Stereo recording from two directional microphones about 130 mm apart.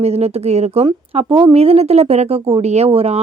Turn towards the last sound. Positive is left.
turn(degrees=-50)  # may be behind; listen again after turning